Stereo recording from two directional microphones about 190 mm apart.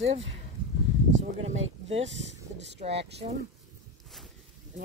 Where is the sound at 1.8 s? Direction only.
35° right (ahead or behind).